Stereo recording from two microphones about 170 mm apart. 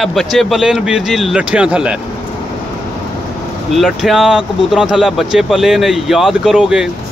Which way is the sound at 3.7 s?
Centre (ahead or behind).